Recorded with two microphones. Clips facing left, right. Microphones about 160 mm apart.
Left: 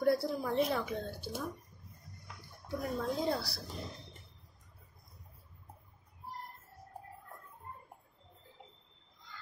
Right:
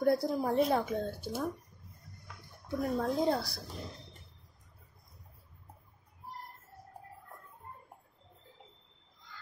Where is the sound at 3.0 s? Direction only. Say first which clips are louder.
Right 3 dB; 60° right (ahead or behind).